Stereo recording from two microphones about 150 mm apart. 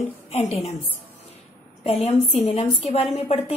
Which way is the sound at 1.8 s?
45° left (ahead or behind).